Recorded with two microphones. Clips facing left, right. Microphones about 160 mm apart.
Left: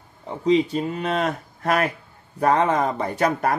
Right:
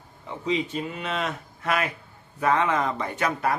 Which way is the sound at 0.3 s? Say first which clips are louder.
Left 8 dB; 35° left (ahead or behind).